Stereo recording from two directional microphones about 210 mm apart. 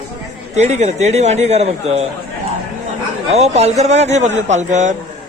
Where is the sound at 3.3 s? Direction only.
30° right (ahead or behind).